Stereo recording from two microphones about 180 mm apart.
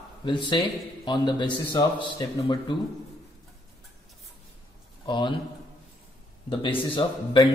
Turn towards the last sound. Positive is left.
turn(degrees=25)  # may be behind; listen again after turning